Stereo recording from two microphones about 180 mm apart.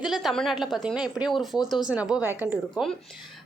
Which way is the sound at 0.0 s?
Centre (ahead or behind).